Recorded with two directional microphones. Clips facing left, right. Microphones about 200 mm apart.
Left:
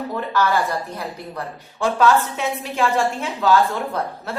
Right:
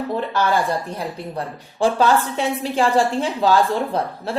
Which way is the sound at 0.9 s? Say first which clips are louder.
Right 3 dB; 30° right (ahead or behind).